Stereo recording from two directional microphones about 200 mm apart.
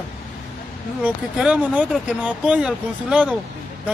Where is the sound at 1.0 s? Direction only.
5° right (ahead or behind).